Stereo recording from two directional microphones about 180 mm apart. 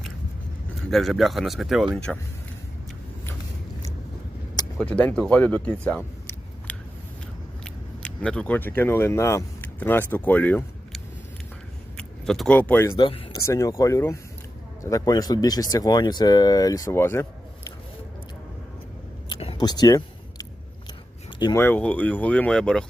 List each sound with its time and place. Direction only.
0.9 s speech: centre (ahead or behind)
4.8 s speech: 5° left (ahead or behind)
13.0 s speech: 25° left (ahead or behind)
19.3 s a sound: 30° left (ahead or behind)
21.3 s speech: 20° left (ahead or behind); by 22.9 s 5° left (ahead or behind)